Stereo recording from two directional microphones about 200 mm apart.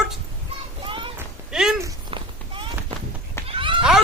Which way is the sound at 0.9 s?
25° right (ahead or behind).